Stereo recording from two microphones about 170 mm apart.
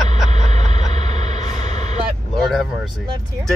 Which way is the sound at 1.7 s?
40° right (ahead or behind).